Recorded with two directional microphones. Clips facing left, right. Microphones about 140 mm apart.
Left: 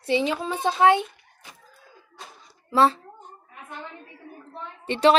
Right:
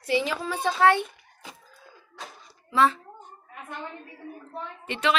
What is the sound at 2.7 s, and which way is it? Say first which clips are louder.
Speech: left 2 dB; 35° left (ahead or behind).